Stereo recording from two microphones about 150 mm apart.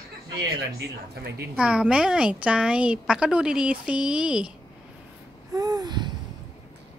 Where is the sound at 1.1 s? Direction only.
90° right.